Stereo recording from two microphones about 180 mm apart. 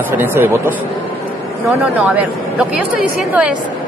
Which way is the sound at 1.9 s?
5° right (ahead or behind).